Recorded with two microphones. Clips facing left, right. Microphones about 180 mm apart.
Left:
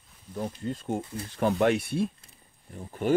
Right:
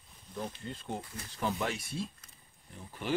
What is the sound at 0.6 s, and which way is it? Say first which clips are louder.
Speech: left 9 dB; 45° left (ahead or behind).